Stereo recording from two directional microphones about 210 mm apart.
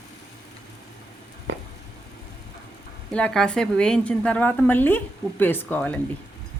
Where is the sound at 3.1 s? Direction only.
5° left (ahead or behind).